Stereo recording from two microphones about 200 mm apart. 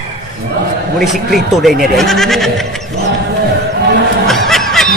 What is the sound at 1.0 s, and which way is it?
Speech, centre (ahead or behind).